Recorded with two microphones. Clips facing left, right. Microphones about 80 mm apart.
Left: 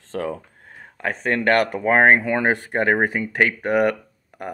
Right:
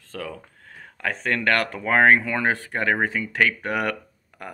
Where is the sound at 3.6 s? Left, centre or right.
Centre.